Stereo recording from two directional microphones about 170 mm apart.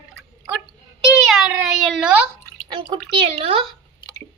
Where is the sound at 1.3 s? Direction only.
Centre (ahead or behind).